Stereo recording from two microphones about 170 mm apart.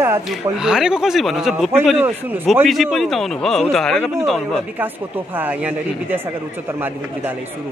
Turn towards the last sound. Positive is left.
turn(degrees=-10)  # may be behind; listen again after turning